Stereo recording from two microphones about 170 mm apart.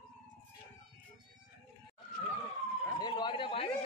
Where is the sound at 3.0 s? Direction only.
25° left (ahead or behind).